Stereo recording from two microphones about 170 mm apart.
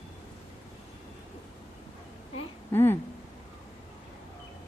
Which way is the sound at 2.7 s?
15° left (ahead or behind).